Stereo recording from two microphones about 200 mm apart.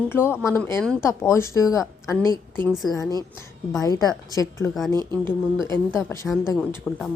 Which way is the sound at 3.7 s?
20° left (ahead or behind).